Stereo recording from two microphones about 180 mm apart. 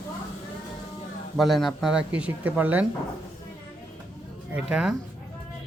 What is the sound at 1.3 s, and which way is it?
Speech, centre (ahead or behind).